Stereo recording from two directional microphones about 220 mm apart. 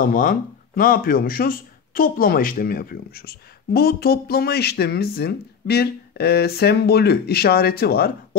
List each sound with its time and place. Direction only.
0.0 s speech: 40° left (ahead or behind)